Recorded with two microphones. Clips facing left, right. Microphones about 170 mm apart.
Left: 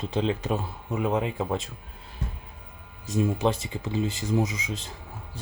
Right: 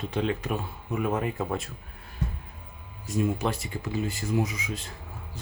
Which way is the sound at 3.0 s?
20° left (ahead or behind).